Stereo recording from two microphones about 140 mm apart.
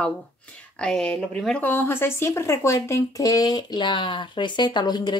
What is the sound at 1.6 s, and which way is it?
Speech, 15° left (ahead or behind).